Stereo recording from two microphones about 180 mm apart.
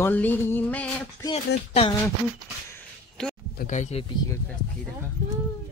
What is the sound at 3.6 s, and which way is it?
Speech, 40° left (ahead or behind).